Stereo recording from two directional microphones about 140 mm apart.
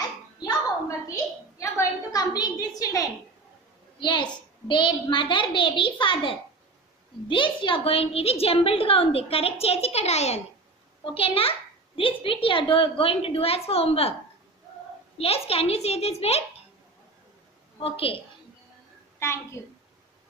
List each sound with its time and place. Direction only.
0.4 s a sound: 25° left (ahead or behind)
4.0 s a child's voice: 35° left (ahead or behind)
15.1 s a woman's voice: 45° left (ahead or behind)
17.7 s a child's voice: 40° left (ahead or behind)
19.1 s a child's voice: 20° left (ahead or behind)